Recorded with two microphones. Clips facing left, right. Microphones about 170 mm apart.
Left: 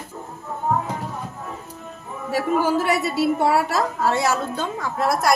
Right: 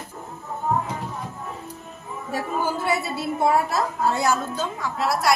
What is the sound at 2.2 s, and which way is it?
A woman's voice, 80° left.